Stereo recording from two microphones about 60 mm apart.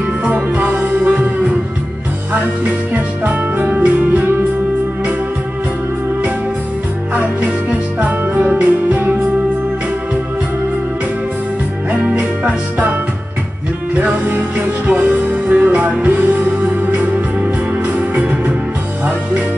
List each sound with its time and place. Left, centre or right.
0.2 s music: right
2.9 s music: right
8.4 s music: right
12.4 s music: right
13.9 s music: right
17.9 s music: right